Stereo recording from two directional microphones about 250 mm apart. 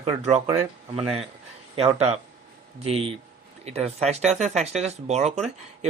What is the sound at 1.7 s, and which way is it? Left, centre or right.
Speech, right.